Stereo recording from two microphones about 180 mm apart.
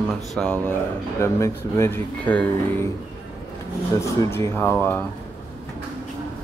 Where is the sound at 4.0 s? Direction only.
15° left (ahead or behind).